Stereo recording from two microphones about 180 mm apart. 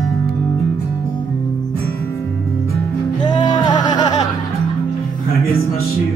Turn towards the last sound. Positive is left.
turn(degrees=25)  # may be behind; listen again after turning